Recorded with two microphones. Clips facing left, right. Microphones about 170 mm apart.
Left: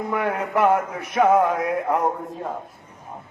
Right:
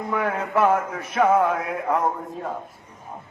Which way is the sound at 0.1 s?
10° left (ahead or behind).